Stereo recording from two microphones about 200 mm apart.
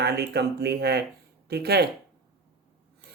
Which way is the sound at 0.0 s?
55° right (ahead or behind).